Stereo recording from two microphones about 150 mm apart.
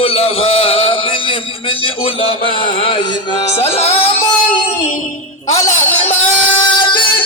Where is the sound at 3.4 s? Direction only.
40° left (ahead or behind).